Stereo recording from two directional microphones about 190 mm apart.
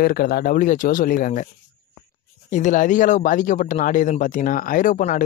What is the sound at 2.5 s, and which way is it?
Speech, 40° left (ahead or behind).